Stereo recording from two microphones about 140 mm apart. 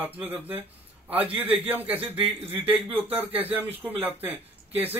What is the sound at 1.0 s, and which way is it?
A man's voice, 10° right (ahead or behind).